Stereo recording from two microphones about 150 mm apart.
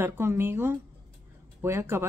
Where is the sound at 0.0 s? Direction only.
15° right (ahead or behind).